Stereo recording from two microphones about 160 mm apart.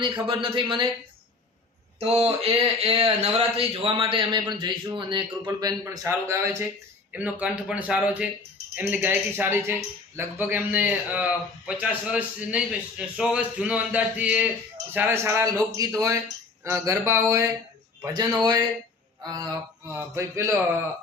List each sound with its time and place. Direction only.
0.0 s speech: 30° right (ahead or behind)
2.0 s speech: 40° right (ahead or behind)
5.5 s a man's voice: 20° right (ahead or behind)